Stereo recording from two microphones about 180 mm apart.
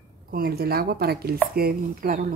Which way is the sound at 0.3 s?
60° right (ahead or behind).